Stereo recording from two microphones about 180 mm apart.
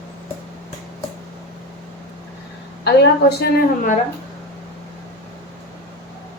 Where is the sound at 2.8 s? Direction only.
65° left (ahead or behind).